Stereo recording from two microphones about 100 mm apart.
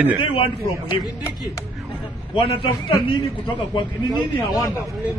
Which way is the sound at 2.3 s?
65° left (ahead or behind).